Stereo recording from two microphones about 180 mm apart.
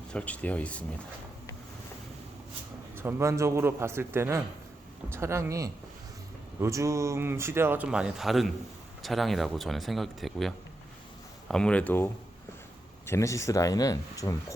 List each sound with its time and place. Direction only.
0.1 s speech: 5° left (ahead or behind)
2.9 s speech: 15° right (ahead or behind); by 14.3 s 20° left (ahead or behind)